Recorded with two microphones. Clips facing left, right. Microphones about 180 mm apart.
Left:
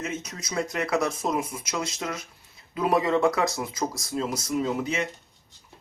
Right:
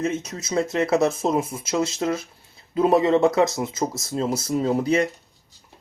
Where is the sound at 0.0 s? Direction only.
30° right (ahead or behind).